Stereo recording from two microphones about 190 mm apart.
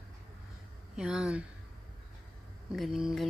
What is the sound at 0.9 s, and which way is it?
Speech, 5° right (ahead or behind).